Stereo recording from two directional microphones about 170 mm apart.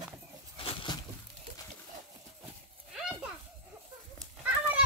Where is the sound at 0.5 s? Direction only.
30° left (ahead or behind).